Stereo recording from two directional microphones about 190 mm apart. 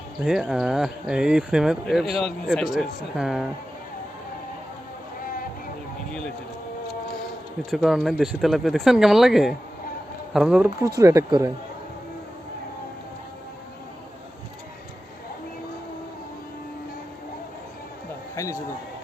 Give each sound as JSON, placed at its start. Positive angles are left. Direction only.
{"t": 0.3, "sound": "speech", "side_deg": -5}
{"t": 5.2, "sound": "a sound", "side_deg": 50}
{"t": 6.1, "sound": "speech", "side_deg": 5}
{"t": 7.7, "sound": "speech", "side_deg": 0}
{"t": 11.0, "sound": "speech", "side_deg": -15}
{"t": 18.3, "sound": "a man's voice", "side_deg": 15}